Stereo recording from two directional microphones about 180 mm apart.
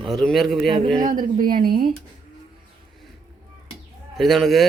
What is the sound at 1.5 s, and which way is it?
Speech, 55° right (ahead or behind).